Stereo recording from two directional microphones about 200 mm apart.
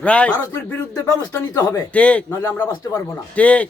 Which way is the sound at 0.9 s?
15° left (ahead or behind).